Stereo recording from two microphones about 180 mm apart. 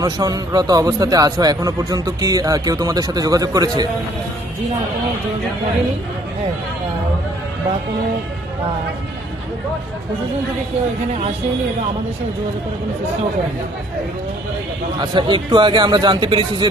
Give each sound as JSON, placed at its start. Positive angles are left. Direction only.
{"t": 0.0, "sound": "a man's voice", "side_deg": -20}
{"t": 15.1, "sound": "a man's voice", "side_deg": -25}